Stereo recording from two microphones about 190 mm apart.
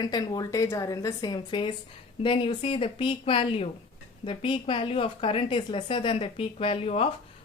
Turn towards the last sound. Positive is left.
turn(degrees=30)  # may be behind; listen again after turning